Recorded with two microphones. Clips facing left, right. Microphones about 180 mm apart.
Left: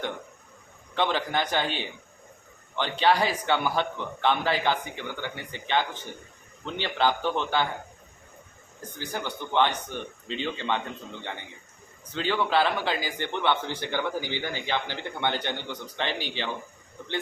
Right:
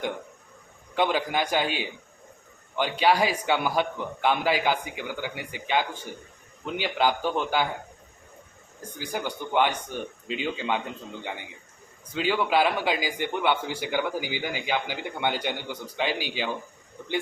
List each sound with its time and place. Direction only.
0.9 s a man's voice: 10° right (ahead or behind)
9.0 s a man's voice: 10° right (ahead or behind)